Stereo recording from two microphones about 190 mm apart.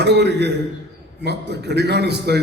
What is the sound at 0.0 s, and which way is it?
A man's voice, 60° right (ahead or behind).